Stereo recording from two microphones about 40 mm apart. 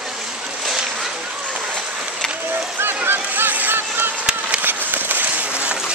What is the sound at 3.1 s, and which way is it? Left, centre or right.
Run, right.